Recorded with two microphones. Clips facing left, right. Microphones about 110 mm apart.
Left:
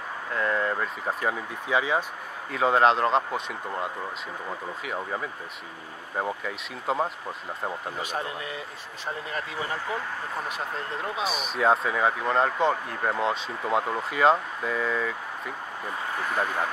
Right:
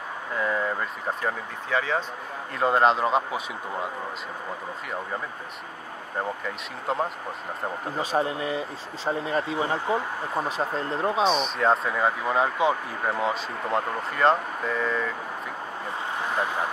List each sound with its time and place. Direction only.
0.3 s a sound: 5° right (ahead or behind)
1.2 s speech: 15° left (ahead or behind)
2.5 s speech: centre (ahead or behind)
6.1 s speech: 5° left (ahead or behind)
8.0 s speech: 30° right (ahead or behind)
11.2 s speech: 5° left (ahead or behind)